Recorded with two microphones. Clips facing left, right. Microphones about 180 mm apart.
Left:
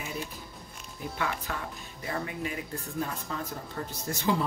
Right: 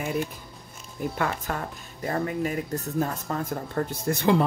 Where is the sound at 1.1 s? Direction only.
50° right (ahead or behind).